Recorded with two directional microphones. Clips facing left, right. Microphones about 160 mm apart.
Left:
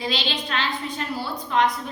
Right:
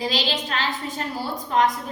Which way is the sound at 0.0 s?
40° right (ahead or behind).